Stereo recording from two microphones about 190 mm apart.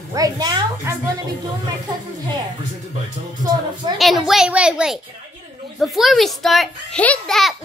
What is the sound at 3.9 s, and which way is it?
A child's voice, centre (ahead or behind).